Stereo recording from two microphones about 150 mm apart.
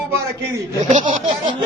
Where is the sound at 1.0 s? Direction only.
35° right (ahead or behind).